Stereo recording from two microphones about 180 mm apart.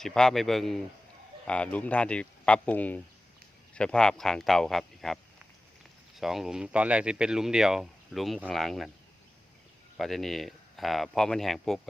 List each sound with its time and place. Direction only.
0.0 s speech: centre (ahead or behind)
10.0 s speech: centre (ahead or behind)